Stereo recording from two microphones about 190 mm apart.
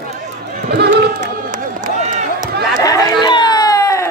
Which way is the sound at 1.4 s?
40° right (ahead or behind).